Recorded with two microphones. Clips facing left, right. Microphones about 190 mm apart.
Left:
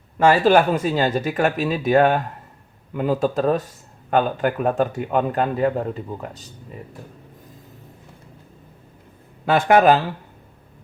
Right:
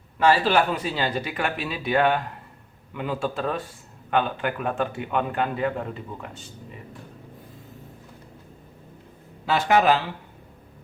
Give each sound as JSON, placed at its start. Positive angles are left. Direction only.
{"t": 0.2, "sound": "speech", "side_deg": 45}
{"t": 9.5, "sound": "speech", "side_deg": 50}